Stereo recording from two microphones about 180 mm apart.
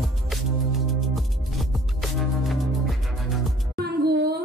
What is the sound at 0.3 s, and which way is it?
Music, centre (ahead or behind).